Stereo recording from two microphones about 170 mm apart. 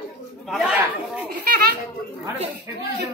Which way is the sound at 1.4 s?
65° right (ahead or behind).